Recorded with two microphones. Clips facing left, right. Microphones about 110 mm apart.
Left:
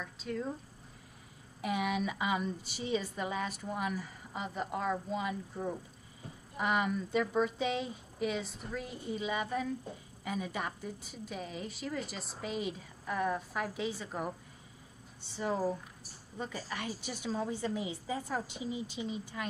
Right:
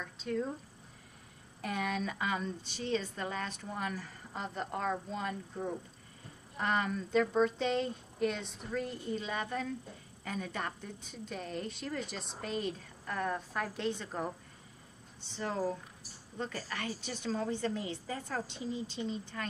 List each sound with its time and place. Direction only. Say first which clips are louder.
0.0 s a woman's voice: right 2 dB; centre (ahead or behind)
1.6 s a woman's voice: left 2 dB; 10° left (ahead or behind)
15.3 s a woman's voice: left 2 dB; 10° left (ahead or behind)